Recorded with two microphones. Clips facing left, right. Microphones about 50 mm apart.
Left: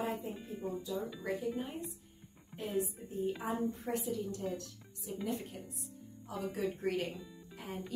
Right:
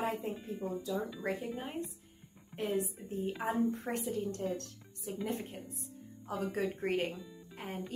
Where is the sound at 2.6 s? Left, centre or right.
Right.